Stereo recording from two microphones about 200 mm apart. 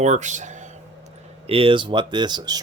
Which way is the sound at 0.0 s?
35° right (ahead or behind).